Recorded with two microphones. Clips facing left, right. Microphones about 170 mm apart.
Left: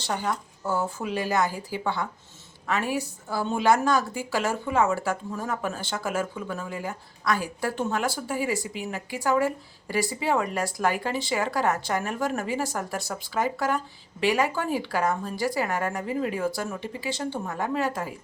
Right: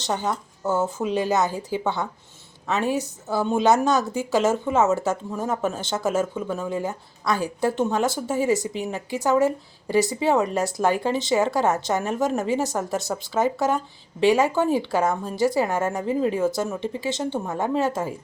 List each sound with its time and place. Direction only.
0.0 s a woman's voice: 20° right (ahead or behind)